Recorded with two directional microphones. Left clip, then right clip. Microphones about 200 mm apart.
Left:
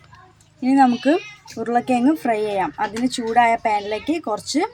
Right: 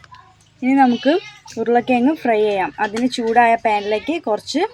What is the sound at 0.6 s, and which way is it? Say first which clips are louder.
A woman's voice: right 1 dB; 15° right (ahead or behind).